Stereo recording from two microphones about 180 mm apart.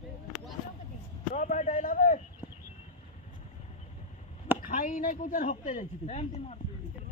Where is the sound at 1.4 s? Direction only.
45° left (ahead or behind).